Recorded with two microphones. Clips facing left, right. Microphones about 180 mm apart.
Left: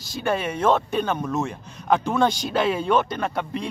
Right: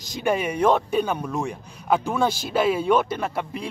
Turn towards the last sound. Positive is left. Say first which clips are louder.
# left 1 dB
turn(degrees=-5)  # may be behind; listen again after turning